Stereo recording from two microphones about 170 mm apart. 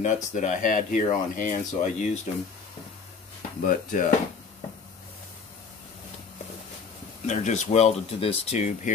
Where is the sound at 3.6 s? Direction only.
50° left (ahead or behind).